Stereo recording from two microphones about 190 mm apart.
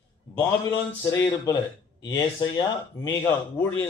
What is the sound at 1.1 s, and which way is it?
A man's voice, 15° left (ahead or behind).